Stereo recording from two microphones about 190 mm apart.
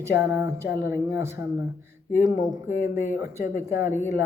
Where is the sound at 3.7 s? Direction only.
10° right (ahead or behind).